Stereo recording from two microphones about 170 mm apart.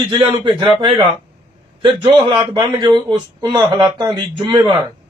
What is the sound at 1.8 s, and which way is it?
Speech, 25° right (ahead or behind).